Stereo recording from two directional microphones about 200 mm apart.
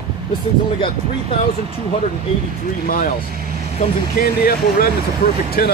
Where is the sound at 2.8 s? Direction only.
45° left (ahead or behind).